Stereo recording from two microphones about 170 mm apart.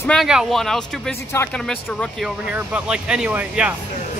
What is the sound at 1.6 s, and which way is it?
Speech, 5° left (ahead or behind).